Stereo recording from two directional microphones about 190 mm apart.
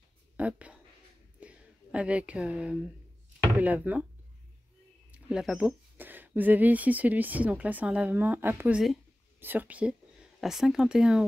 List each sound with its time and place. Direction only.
0.4 s speech: 5° right (ahead or behind)
1.4 s a sound: 5° right (ahead or behind)
3.6 s speech: 10° right (ahead or behind)
5.1 s speech: 5° right (ahead or behind)